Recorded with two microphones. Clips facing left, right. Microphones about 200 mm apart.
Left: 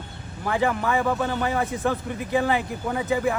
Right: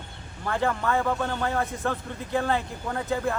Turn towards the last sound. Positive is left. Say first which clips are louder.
# left 4 dB
turn(degrees=5)  # may be behind; listen again after turning